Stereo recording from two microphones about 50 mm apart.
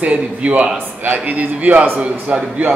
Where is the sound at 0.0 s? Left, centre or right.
Right.